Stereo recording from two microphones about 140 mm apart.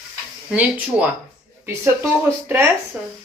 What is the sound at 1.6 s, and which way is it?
Speech, 20° right (ahead or behind).